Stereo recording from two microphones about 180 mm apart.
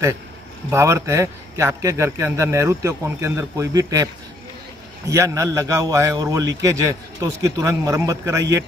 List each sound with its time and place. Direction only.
0.7 s a man's voice: 15° right (ahead or behind)